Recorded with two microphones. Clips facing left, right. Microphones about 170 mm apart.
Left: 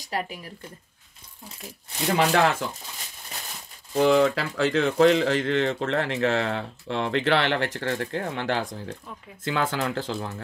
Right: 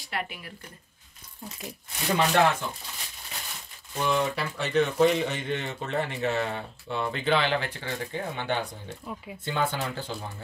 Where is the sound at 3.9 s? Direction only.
85° left.